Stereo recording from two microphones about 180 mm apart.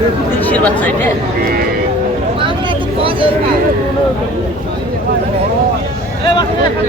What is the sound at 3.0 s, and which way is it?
Vehicle, 30° right (ahead or behind).